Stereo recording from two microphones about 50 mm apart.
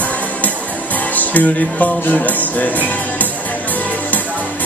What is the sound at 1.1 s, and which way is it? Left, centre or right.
Music, left.